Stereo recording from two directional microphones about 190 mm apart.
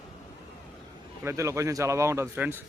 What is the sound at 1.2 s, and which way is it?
Speech, 15° right (ahead or behind).